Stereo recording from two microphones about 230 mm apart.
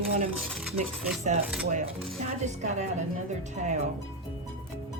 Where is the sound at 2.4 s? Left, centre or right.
Right.